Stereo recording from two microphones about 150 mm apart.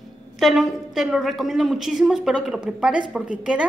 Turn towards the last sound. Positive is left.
turn(degrees=-5)  # may be behind; listen again after turning